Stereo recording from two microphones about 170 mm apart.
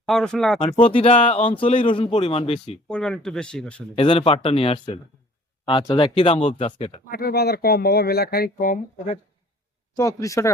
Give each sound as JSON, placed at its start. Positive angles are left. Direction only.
{"t": 0.0, "sound": "speech", "side_deg": 5}
{"t": 0.6, "sound": "speech", "side_deg": 35}
{"t": 2.9, "sound": "speech", "side_deg": 5}
{"t": 3.9, "sound": "speech", "side_deg": 30}
{"t": 7.1, "sound": "speech", "side_deg": 65}
{"t": 9.9, "sound": "speech", "side_deg": 20}